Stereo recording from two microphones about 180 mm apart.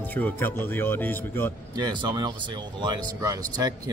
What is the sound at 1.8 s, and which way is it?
Speech, 25° right (ahead or behind).